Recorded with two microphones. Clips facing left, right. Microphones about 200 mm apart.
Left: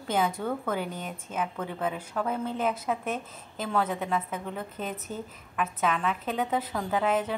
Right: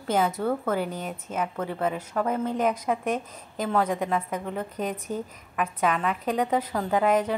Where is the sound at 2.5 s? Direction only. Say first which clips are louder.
Right 4 dB; 40° right (ahead or behind).